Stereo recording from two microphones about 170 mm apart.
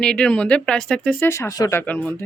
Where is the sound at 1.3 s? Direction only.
20° left (ahead or behind).